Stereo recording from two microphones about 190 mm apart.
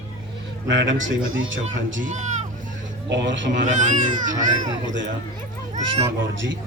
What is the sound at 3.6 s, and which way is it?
Speech, 40° right (ahead or behind).